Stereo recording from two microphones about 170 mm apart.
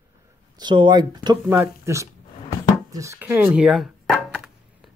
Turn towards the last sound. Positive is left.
turn(degrees=0)  # may be behind; listen again after turning